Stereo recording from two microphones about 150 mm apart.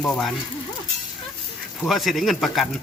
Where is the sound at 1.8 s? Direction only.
Centre (ahead or behind).